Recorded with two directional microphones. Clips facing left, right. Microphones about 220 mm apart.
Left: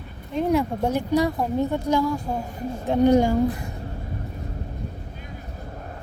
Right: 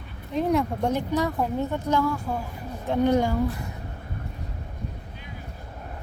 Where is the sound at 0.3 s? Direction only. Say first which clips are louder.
Left 2 dB; centre (ahead or behind).